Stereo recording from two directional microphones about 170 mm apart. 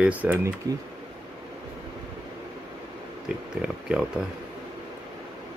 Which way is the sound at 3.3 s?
5° right (ahead or behind).